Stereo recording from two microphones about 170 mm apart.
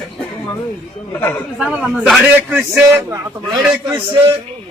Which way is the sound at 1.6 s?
5° right (ahead or behind).